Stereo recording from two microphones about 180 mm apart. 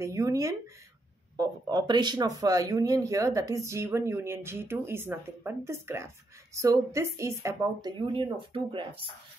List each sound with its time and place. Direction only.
0.0 s speech: 15° right (ahead or behind)
8.1 s speech: 30° right (ahead or behind)